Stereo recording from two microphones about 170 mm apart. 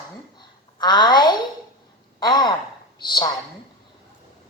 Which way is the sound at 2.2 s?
25° left (ahead or behind).